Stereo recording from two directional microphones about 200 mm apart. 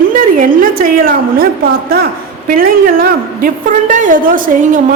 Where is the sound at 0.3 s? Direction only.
45° right (ahead or behind).